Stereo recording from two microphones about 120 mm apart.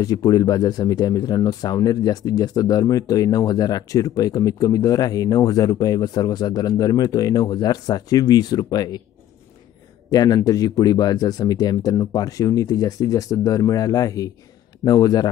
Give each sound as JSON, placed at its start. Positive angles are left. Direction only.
{"t": 0.0, "sound": "speech", "side_deg": 30}
{"t": 10.0, "sound": "speech", "side_deg": 35}